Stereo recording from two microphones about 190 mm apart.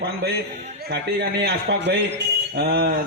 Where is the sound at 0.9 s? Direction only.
60° right (ahead or behind).